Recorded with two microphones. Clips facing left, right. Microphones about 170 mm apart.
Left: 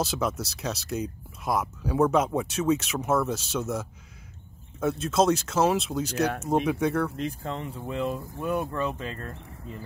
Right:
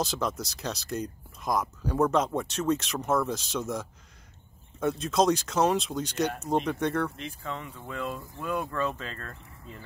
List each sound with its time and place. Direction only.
0.0 s speech: 5° left (ahead or behind)
7.2 s speech: 40° left (ahead or behind)
7.8 s speech: 20° left (ahead or behind)